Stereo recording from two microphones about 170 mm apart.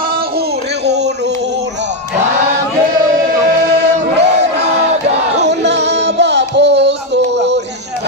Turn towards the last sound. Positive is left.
turn(degrees=-90)